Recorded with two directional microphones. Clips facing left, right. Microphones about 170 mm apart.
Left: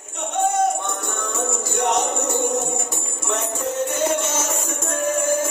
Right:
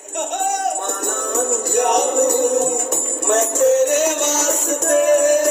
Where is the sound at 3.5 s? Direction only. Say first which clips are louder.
Right 13 dB; 80° right.